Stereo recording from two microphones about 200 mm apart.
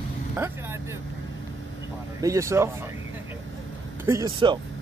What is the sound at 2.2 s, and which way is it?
Speech, 15° right (ahead or behind).